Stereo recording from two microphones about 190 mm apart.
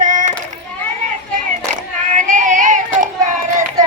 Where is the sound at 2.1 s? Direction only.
40° right (ahead or behind).